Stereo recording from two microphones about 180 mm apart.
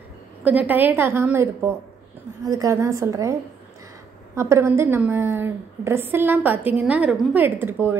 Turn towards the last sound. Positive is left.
turn(degrees=-10)  # may be behind; listen again after turning